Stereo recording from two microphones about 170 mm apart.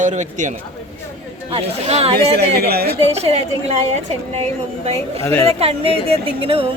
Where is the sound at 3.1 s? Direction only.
35° right (ahead or behind).